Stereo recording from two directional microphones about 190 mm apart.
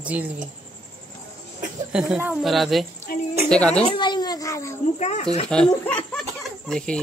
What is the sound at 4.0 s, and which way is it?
Speech, 20° left (ahead or behind).